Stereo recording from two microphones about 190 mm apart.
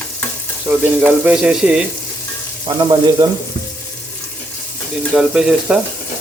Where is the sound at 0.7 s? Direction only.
10° right (ahead or behind).